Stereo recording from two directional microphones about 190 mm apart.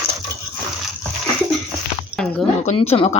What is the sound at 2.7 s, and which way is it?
Speech, 30° left (ahead or behind).